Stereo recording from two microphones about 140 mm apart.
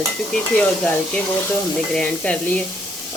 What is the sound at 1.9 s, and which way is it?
Stir, 10° left (ahead or behind).